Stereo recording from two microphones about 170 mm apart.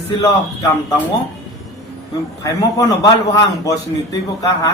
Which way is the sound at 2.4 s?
20° left (ahead or behind).